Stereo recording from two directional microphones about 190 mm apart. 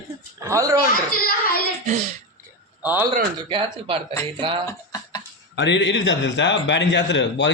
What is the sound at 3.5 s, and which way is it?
Speech, 30° right (ahead or behind).